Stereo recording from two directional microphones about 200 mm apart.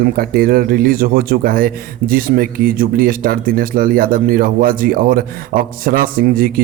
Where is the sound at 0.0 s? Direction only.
45° right (ahead or behind).